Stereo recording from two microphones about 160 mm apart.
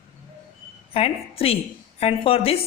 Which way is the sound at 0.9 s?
35° left (ahead or behind).